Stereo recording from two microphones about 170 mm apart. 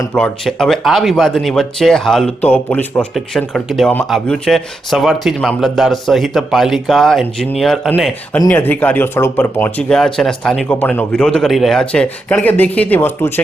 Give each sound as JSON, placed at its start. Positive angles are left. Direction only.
{"t": 0.1, "sound": "speech", "side_deg": 5}